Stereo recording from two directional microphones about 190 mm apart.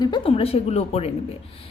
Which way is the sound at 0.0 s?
25° left (ahead or behind).